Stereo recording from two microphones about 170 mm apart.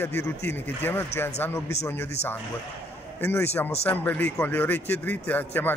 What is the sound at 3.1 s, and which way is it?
Speech, 15° left (ahead or behind).